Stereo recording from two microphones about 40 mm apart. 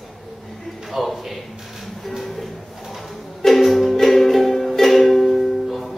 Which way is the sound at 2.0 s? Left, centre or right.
Centre.